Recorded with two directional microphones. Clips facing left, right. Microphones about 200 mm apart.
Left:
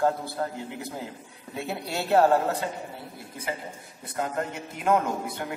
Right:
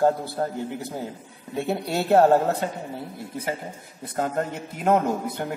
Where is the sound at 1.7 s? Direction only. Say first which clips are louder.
Right 4 dB; 40° right (ahead or behind).